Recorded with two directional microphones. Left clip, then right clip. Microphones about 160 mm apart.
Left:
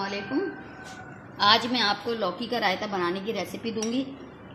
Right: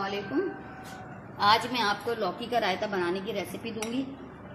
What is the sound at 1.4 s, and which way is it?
Speech, 45° left (ahead or behind).